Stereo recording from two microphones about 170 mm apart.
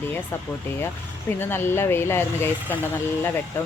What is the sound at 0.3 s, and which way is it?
Speech, 15° left (ahead or behind).